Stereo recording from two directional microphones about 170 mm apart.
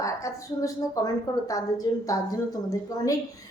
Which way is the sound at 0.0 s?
20° left (ahead or behind).